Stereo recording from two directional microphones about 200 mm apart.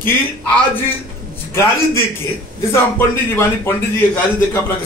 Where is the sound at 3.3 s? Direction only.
10° left (ahead or behind).